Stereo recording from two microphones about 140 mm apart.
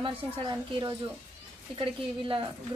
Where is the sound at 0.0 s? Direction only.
40° right (ahead or behind).